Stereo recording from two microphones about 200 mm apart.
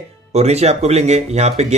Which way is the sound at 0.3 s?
35° right (ahead or behind).